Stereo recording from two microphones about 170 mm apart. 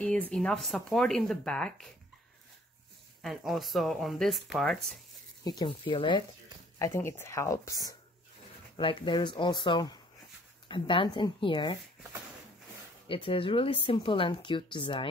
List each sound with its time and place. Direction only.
0.0 s speech: 5° left (ahead or behind)
3.2 s speech: centre (ahead or behind)
5.4 s speech: 25° left (ahead or behind)
6.8 s speech: 15° left (ahead or behind)
13.1 s speech: 30° left (ahead or behind)